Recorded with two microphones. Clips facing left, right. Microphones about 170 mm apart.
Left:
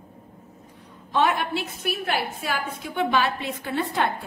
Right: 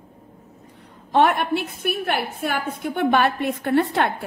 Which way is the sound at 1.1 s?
60° right (ahead or behind).